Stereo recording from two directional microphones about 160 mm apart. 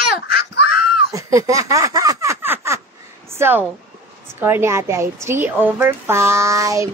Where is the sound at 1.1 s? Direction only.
20° right (ahead or behind).